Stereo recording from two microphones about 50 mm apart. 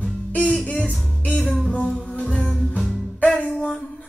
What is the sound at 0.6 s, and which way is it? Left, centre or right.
Music, left.